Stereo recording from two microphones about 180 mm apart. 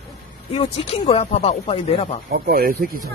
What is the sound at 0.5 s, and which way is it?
Speech, 35° left (ahead or behind).